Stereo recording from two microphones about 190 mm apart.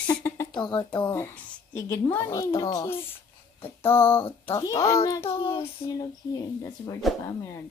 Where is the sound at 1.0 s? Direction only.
10° left (ahead or behind).